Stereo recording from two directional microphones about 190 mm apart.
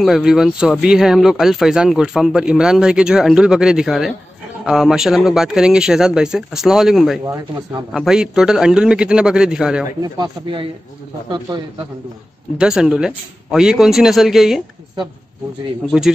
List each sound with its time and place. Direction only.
0.0 s speech: centre (ahead or behind)
7.2 s speech: 15° right (ahead or behind)
7.9 s speech: 5° right (ahead or behind)
10.1 s speech: 25° right (ahead or behind)
12.5 s speech: 5° right (ahead or behind)
15.9 s speech: 5° right (ahead or behind)